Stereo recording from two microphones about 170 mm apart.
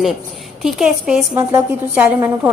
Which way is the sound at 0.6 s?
Centre (ahead or behind).